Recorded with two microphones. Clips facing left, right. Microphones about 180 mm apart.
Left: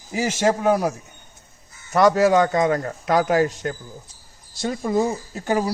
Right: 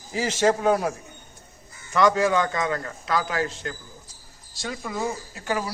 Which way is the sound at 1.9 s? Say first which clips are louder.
Left 4 dB; 40° left (ahead or behind).